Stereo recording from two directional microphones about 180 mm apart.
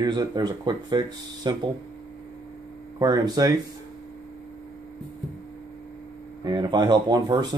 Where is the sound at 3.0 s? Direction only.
20° right (ahead or behind).